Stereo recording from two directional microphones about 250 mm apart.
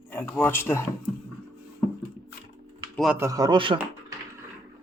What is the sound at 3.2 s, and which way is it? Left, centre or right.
Speech, centre.